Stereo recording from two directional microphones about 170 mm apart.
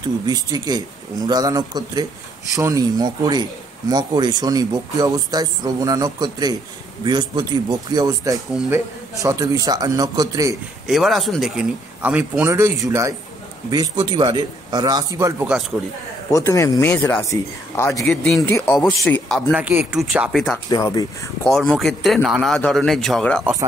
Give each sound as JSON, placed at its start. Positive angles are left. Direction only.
{"t": 0.3, "sound": "a man's voice", "side_deg": -25}
{"t": 10.5, "sound": "a man's voice", "side_deg": 0}
{"t": 16.3, "sound": "speech", "side_deg": 20}
{"t": 18.2, "sound": "speech", "side_deg": 5}
{"t": 19.5, "sound": "speech", "side_deg": -10}
{"t": 20.7, "sound": "speech", "side_deg": 25}
{"t": 21.5, "sound": "speech", "side_deg": 0}